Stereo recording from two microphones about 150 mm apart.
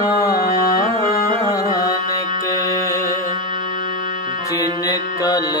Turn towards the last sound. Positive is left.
turn(degrees=25)  # may be behind; listen again after turning